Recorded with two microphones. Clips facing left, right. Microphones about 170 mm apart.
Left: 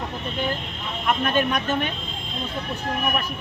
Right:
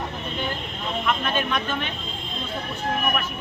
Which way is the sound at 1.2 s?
45° left (ahead or behind).